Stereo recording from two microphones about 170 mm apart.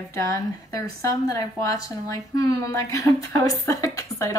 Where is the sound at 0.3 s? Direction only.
20° left (ahead or behind).